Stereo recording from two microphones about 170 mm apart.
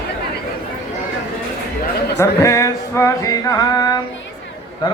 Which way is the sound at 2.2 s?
15° left (ahead or behind).